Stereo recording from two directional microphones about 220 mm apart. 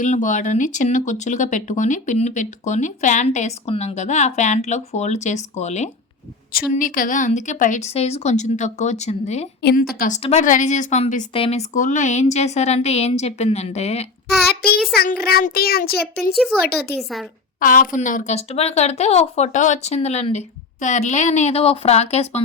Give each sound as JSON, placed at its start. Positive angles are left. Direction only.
{"t": 0.0, "sound": "speech", "side_deg": 35}
{"t": 9.6, "sound": "child singing", "side_deg": 45}
{"t": 10.2, "sound": "a woman's voice", "side_deg": 35}
{"t": 14.9, "sound": "child singing", "side_deg": 45}
{"t": 16.3, "sound": "speech", "side_deg": 0}
{"t": 17.6, "sound": "speech", "side_deg": 40}